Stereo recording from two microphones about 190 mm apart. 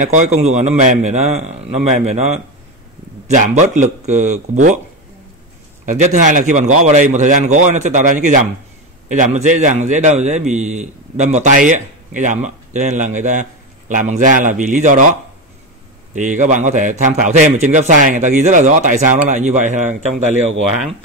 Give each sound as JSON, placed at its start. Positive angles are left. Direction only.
{"t": 0.0, "sound": "a man's voice", "side_deg": -40}
{"t": 5.9, "sound": "a man's voice", "side_deg": -40}
{"t": 16.2, "sound": "a man's voice", "side_deg": -40}